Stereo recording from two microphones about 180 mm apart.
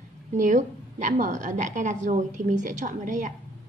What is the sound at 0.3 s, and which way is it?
A woman's voice, 45° right (ahead or behind).